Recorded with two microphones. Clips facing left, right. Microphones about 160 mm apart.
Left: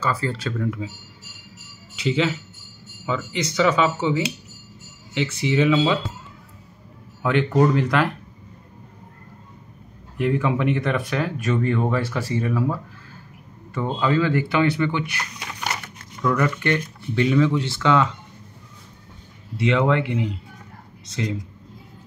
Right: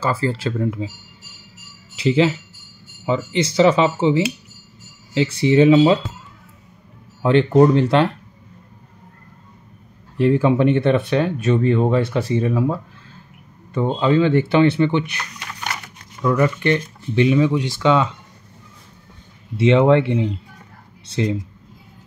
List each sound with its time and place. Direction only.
0.0 s speech: 30° right (ahead or behind)
2.0 s speech: 30° right (ahead or behind)
7.2 s speech: 30° right (ahead or behind)
10.1 s speech: 30° right (ahead or behind)
16.3 s speech: 20° right (ahead or behind)
19.5 s speech: 25° right (ahead or behind)